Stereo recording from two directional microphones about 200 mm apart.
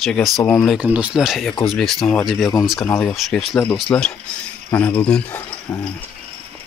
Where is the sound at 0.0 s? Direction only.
Centre (ahead or behind).